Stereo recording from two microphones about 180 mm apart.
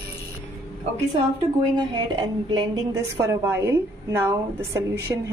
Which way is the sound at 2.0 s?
25° right (ahead or behind).